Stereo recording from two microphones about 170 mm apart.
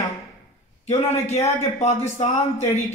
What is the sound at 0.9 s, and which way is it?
Speech, 40° left (ahead or behind).